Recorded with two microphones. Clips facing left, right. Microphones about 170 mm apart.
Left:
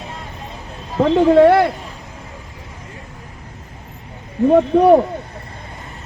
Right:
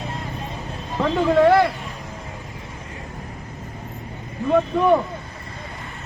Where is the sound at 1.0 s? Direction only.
30° left (ahead or behind).